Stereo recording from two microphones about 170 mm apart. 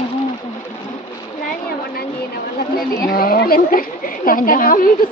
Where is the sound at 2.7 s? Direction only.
60° left (ahead or behind).